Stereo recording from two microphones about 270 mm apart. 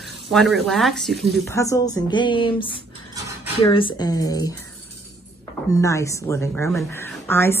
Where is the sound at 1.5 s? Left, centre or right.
Centre.